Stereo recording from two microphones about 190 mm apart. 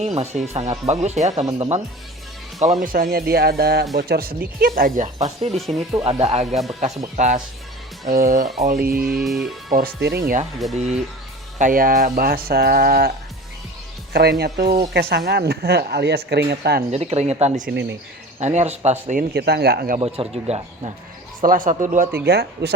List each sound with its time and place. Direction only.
0.0 s speech: 35° right (ahead or behind)
2.8 s speech: 50° right (ahead or behind)
5.9 s speech: 25° right (ahead or behind); by 9.1 s 50° right (ahead or behind)
9.1 s speech: centre (ahead or behind)
9.7 s speech: 55° right (ahead or behind)
10.8 s speech: 35° right (ahead or behind)
11.6 s speech: 50° right (ahead or behind)
16.9 s speech: 35° right (ahead or behind)
17.7 s speech: 65° right (ahead or behind)
18.3 s speech: 35° right (ahead or behind)
19.3 s speech: 60° right (ahead or behind)
20.0 s speech: 30° right (ahead or behind)
21.4 s speech: 45° right (ahead or behind)
22.3 s speech: 60° right (ahead or behind)